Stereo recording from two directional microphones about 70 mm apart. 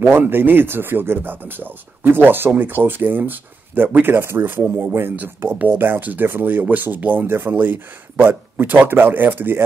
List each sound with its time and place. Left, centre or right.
0.1 s speech: right